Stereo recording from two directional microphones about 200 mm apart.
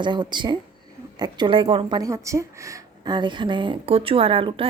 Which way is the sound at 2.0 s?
15° right (ahead or behind).